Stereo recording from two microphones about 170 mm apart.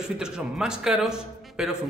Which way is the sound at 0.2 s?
5° right (ahead or behind).